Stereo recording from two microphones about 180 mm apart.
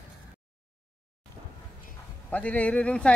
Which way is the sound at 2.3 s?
10° left (ahead or behind).